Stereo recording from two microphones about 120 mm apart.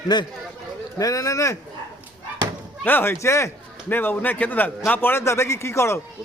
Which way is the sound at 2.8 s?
15° left (ahead or behind).